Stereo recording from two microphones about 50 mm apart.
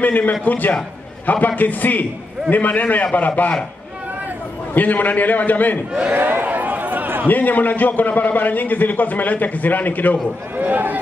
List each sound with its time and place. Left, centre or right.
0.0 s a man's voice: left
4.7 s a man's voice: left
6.1 s a sound: right
7.2 s a man's voice: left
10.6 s speech: right